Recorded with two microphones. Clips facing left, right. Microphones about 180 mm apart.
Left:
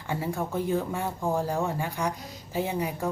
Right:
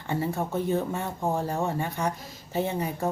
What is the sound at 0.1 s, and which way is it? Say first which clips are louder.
A woman's voice: right 2 dB; 10° left (ahead or behind).